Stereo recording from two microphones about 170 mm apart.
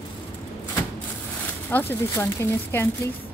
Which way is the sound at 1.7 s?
10° left (ahead or behind).